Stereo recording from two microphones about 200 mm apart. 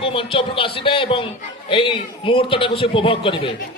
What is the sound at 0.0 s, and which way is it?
A man's voice, 25° left (ahead or behind).